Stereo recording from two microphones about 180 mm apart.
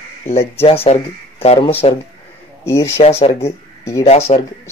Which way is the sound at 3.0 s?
35° left (ahead or behind).